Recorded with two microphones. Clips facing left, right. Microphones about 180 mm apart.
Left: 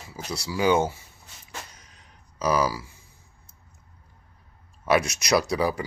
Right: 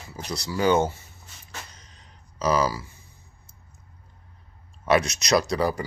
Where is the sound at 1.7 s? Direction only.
10° left (ahead or behind).